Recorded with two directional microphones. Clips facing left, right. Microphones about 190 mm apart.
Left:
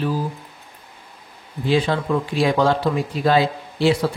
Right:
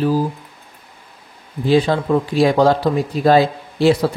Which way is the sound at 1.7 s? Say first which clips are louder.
Right 4 dB; 40° right (ahead or behind).